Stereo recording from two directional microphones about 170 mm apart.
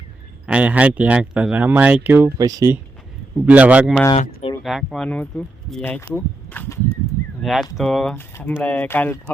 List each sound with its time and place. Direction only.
0.4 s speech: 5° right (ahead or behind)
2.4 s speech: 20° right (ahead or behind)
3.4 s speech: 10° right (ahead or behind)
4.1 s a sound: 35° left (ahead or behind)
4.6 s speech: centre (ahead or behind)
7.4 s speech: centre (ahead or behind)